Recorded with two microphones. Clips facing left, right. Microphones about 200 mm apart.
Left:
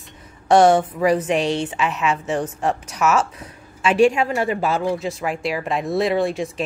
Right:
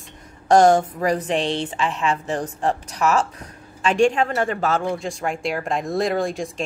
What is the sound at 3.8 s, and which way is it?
Speech, 5° left (ahead or behind).